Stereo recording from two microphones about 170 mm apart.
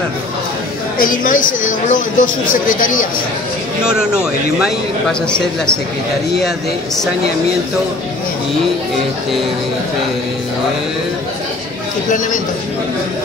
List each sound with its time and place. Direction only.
0.9 s speech: 55° left (ahead or behind)
3.8 s a man's voice: 5° right (ahead or behind)